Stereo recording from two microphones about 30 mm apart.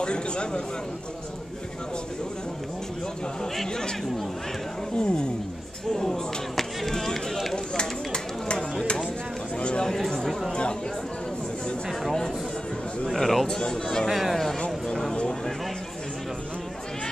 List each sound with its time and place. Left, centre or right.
0.0 s a man's voice: left
4.9 s a man's voice: left
5.9 s a man's voice: centre
7.5 s a sound: left
9.6 s chatter: left
10.5 s a man's voice: left
13.0 s a man's voice: centre
13.5 s a man's voice: left
14.0 s speech: centre
14.3 s speech: centre
14.9 s a sound: centre